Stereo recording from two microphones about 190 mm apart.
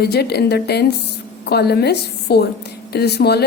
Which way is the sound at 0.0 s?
60° left (ahead or behind).